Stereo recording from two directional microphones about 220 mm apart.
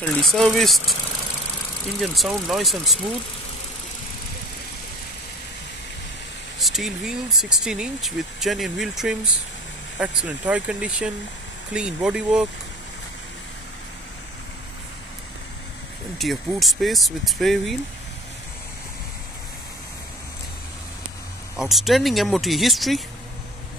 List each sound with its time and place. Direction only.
0.0 s speech: 5° left (ahead or behind)
2.0 s speech: centre (ahead or behind)
6.6 s speech: centre (ahead or behind)
16.2 s speech: centre (ahead or behind)
21.5 s speech: centre (ahead or behind)